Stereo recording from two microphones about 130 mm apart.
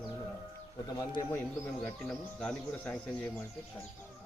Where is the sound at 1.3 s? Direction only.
15° left (ahead or behind).